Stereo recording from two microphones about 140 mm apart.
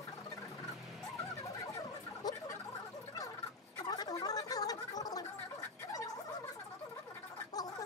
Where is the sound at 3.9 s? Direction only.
25° left (ahead or behind).